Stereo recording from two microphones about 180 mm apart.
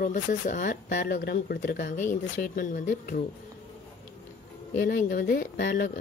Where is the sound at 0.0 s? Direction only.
45° left (ahead or behind).